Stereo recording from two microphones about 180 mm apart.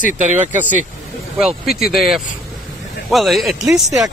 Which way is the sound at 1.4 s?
Centre (ahead or behind).